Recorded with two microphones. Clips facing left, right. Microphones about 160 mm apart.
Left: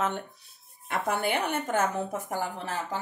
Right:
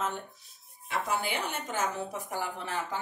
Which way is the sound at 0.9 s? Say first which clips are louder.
Left 4 dB; 60° left (ahead or behind).